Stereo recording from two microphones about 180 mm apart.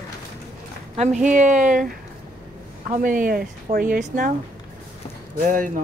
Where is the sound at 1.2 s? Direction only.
45° right (ahead or behind).